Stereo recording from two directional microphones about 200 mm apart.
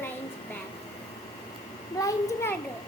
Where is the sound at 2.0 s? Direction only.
15° left (ahead or behind).